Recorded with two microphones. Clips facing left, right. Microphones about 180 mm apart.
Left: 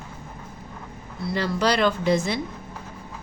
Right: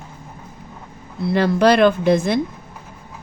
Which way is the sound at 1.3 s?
55° right (ahead or behind).